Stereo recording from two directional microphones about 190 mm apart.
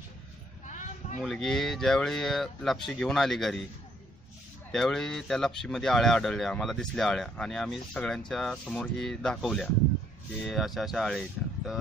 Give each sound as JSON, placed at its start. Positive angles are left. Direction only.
{"t": 0.7, "sound": "a sound", "side_deg": 40}
{"t": 1.2, "sound": "speech", "side_deg": 0}
{"t": 4.7, "sound": "speech", "side_deg": 5}